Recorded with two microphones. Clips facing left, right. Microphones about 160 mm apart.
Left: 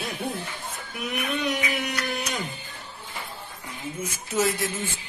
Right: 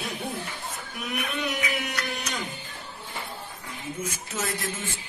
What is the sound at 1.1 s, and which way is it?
Speech, centre (ahead or behind).